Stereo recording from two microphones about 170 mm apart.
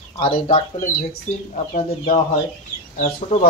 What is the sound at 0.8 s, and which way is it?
Speech, 50° left (ahead or behind).